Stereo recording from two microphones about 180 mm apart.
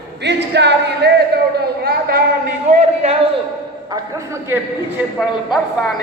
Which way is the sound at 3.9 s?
15° right (ahead or behind).